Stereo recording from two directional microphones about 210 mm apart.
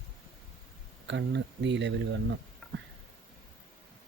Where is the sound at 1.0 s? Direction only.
60° right (ahead or behind).